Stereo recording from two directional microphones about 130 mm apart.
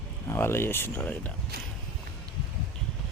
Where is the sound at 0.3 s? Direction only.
20° left (ahead or behind).